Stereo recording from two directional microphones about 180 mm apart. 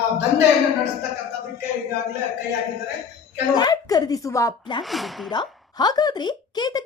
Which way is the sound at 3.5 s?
20° left (ahead or behind).